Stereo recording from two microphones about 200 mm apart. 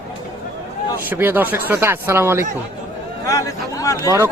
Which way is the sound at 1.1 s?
10° right (ahead or behind).